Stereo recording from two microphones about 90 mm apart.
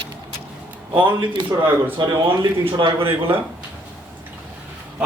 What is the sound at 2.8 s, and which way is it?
Speech, 80° right.